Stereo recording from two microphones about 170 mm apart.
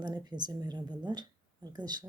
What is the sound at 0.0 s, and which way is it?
Speech, 25° right (ahead or behind).